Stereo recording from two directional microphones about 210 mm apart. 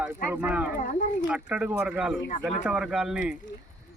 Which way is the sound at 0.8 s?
40° left (ahead or behind).